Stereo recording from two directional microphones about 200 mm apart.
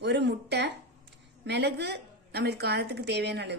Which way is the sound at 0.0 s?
60° right (ahead or behind).